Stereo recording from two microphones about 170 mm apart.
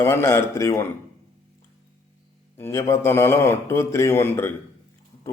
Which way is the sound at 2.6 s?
15° left (ahead or behind).